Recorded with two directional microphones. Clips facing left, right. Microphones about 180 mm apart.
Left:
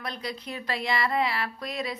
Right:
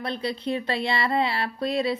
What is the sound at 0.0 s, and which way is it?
Speech, 30° right (ahead or behind).